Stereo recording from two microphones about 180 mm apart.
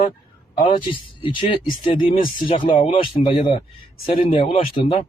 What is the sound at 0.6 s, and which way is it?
Speech, 30° left (ahead or behind).